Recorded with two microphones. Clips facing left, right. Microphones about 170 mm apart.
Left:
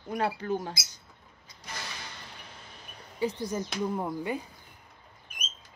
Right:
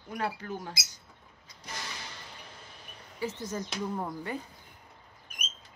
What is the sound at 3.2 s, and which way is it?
Speech, 15° left (ahead or behind).